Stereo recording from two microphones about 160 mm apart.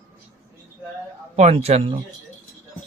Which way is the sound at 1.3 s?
40° right (ahead or behind).